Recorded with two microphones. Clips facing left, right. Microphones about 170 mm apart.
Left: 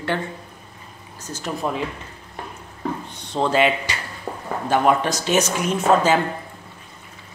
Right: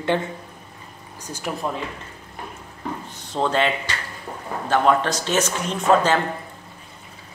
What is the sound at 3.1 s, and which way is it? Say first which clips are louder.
Speech: left 2 dB; centre (ahead or behind).